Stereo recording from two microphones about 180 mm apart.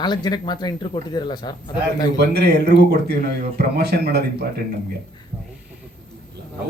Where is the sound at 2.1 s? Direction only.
65° right (ahead or behind).